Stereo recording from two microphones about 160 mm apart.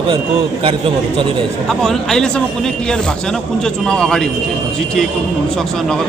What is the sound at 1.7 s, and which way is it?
Speech, 5° left (ahead or behind).